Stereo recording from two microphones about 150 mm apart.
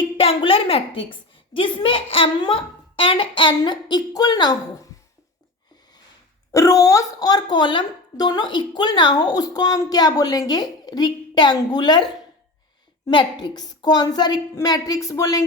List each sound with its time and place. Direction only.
0.0 s a woman's voice: 40° left (ahead or behind)
6.5 s a woman's voice: 20° left (ahead or behind)
13.1 s a woman's voice: 30° left (ahead or behind)